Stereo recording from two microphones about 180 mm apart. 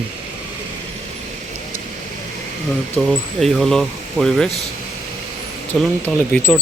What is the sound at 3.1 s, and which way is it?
Speech, centre (ahead or behind).